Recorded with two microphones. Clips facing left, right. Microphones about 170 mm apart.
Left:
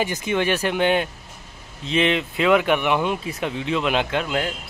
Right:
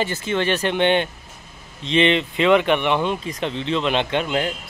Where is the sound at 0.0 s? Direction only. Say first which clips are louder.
Even; 15° left (ahead or behind).